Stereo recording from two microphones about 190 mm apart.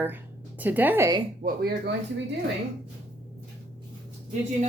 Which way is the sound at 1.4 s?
55° right (ahead or behind).